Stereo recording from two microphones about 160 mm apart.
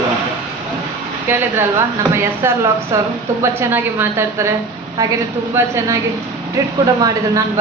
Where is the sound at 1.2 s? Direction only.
15° right (ahead or behind).